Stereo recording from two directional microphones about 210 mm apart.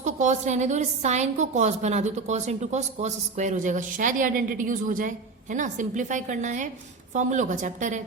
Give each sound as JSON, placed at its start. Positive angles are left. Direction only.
{"t": 0.0, "sound": "a woman's voice", "side_deg": -35}